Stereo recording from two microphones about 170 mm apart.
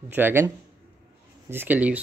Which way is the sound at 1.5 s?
10° right (ahead or behind).